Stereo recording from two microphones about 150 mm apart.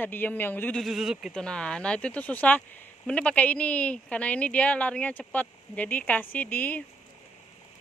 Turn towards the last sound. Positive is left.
turn(degrees=10)  # may be behind; listen again after turning